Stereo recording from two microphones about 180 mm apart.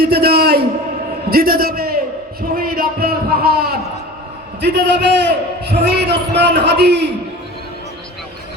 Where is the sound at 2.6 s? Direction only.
55° right (ahead or behind).